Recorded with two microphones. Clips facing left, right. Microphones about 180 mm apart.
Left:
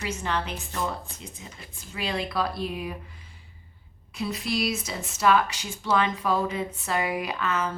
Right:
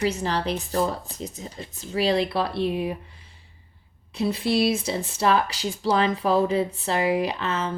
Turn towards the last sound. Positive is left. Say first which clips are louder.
# right 3 dB
turn(degrees=-30)  # may be behind; listen again after turning